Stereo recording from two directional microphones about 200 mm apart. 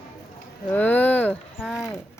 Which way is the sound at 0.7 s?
10° left (ahead or behind).